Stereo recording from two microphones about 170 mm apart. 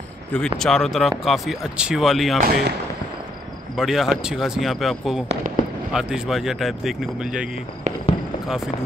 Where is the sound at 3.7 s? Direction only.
Centre (ahead or behind).